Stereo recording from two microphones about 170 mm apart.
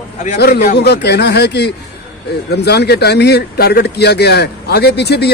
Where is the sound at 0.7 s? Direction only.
75° left (ahead or behind).